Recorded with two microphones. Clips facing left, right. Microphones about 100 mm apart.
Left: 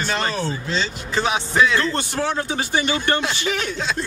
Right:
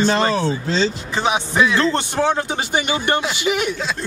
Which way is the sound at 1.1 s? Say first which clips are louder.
Even; 15° right (ahead or behind).